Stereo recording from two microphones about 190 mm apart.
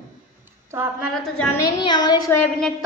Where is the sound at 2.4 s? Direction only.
5° left (ahead or behind).